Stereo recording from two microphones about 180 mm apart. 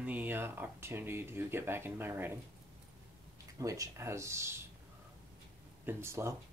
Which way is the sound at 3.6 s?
20° right (ahead or behind).